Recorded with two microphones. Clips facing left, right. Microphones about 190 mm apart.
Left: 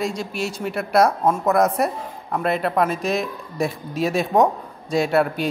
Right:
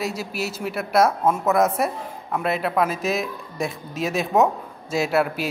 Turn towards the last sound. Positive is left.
turn(degrees=0)  # may be behind; listen again after turning